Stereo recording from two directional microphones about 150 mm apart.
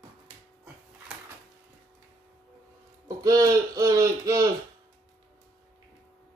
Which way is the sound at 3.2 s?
25° right (ahead or behind).